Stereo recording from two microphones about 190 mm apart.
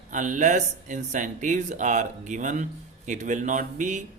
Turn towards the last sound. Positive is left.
turn(degrees=-40)  # may be behind; listen again after turning